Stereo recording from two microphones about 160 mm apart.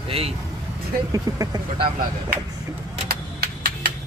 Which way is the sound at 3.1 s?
75° right (ahead or behind).